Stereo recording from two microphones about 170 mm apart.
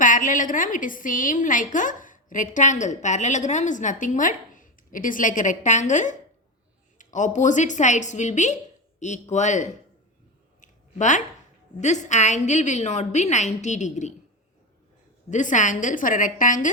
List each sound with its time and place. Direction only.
0.0 s a woman's voice: 50° left (ahead or behind)
10.6 s a sound: 45° left (ahead or behind)
11.8 s a woman's voice: 45° left (ahead or behind)
15.3 s a woman's voice: 45° left (ahead or behind)